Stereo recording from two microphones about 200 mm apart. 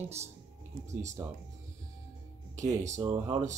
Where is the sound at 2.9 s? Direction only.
25° right (ahead or behind).